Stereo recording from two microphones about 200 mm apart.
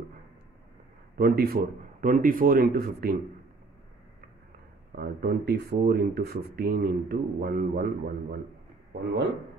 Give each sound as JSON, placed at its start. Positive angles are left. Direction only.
{"t": 1.1, "sound": "speech", "side_deg": -50}
{"t": 4.9, "sound": "speech", "side_deg": -50}